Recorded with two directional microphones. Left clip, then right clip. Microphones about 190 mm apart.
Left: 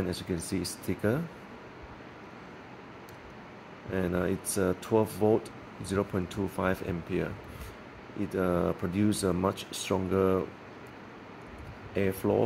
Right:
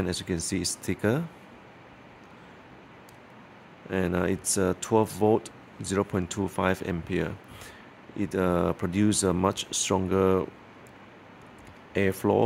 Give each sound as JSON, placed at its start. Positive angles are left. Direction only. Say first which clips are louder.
{"t": 0.1, "sound": "speech", "louder": "right 3 dB", "side_deg": -40}
{"t": 3.9, "sound": "speech", "louder": "right 3 dB", "side_deg": -45}
{"t": 11.9, "sound": "speech", "louder": "right 4 dB", "side_deg": -45}